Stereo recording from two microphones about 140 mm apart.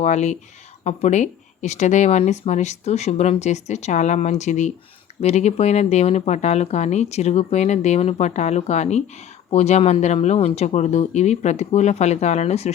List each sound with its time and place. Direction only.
0.0 s speech: 55° left (ahead or behind)